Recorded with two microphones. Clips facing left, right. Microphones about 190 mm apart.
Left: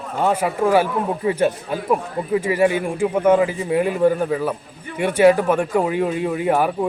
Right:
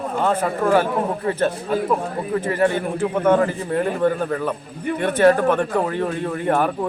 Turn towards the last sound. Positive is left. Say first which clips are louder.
# left 1 dB
turn(degrees=10)  # may be behind; listen again after turning